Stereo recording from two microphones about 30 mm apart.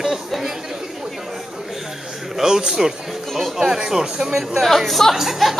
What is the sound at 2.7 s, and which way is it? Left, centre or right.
Speech, centre.